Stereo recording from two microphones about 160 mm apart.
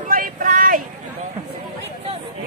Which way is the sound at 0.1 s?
60° right (ahead or behind).